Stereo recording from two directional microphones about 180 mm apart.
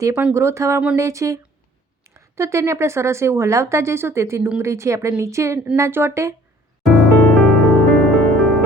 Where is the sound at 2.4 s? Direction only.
15° right (ahead or behind).